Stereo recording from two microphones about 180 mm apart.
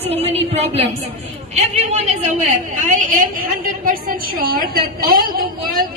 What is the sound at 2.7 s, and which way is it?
A woman's voice, 50° right (ahead or behind).